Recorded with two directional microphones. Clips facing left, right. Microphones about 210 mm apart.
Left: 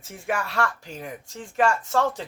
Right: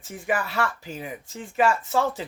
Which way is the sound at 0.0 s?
Centre (ahead or behind).